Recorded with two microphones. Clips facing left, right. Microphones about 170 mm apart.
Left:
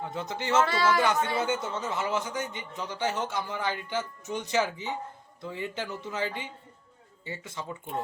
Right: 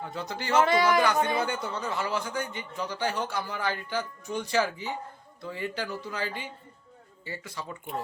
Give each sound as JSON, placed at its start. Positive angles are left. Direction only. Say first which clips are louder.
{"t": 0.0, "sound": "speech", "louder": "left 1 dB", "side_deg": 20}
{"t": 0.5, "sound": "speech", "louder": "right 2 dB", "side_deg": -15}
{"t": 1.4, "sound": "speech", "louder": "left 1 dB", "side_deg": 20}